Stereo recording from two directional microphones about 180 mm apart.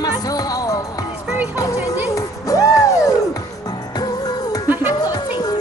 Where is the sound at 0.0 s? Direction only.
20° left (ahead or behind).